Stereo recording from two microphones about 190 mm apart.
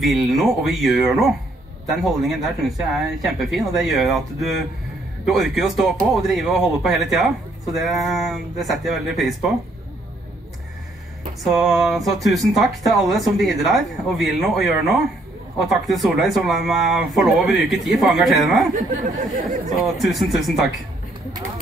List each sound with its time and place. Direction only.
0.0 s speech: centre (ahead or behind)
11.4 s speech: centre (ahead or behind)
18.8 s speech: 40° right (ahead or behind)
20.0 s speech: centre (ahead or behind)